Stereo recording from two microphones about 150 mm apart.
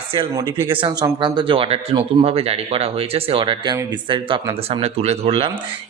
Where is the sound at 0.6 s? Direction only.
35° right (ahead or behind).